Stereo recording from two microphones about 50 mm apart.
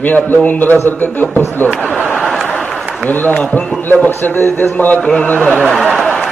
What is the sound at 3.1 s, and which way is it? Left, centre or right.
A man's voice, left.